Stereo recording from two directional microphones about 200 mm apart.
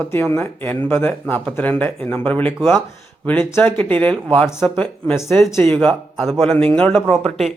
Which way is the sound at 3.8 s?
10° left (ahead or behind).